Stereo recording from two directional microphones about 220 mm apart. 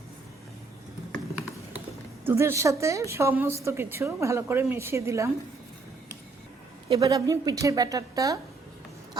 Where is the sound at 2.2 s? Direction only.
10° right (ahead or behind).